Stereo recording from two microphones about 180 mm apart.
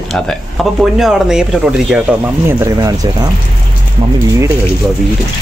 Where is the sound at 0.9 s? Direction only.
Centre (ahead or behind).